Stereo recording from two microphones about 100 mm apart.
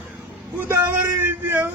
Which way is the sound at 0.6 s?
20° right (ahead or behind).